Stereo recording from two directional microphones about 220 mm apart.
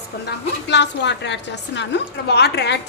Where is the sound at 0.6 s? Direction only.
50° left (ahead or behind).